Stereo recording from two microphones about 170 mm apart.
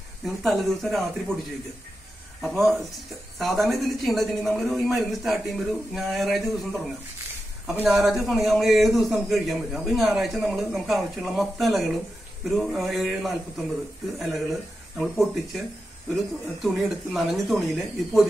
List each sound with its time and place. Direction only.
0.2 s a man's voice: centre (ahead or behind)
2.4 s a man's voice: centre (ahead or behind)